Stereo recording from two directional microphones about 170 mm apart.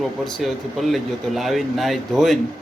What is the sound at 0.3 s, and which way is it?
Speech, centre (ahead or behind).